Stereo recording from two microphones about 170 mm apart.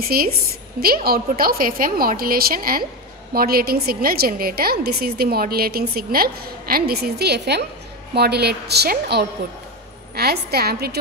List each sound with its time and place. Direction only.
0.0 s a woman's voice: 60° right (ahead or behind)